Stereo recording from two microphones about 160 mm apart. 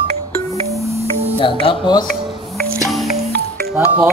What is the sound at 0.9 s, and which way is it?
Music, 40° right (ahead or behind).